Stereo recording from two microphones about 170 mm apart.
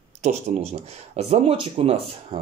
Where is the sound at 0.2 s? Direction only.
40° right (ahead or behind).